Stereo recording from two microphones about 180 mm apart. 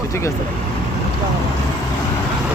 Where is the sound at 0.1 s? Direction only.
15° left (ahead or behind).